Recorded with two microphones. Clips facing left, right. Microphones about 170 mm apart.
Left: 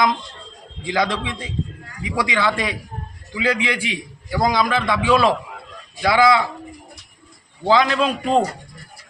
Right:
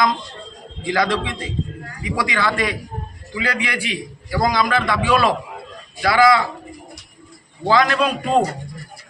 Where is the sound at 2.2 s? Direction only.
20° left (ahead or behind).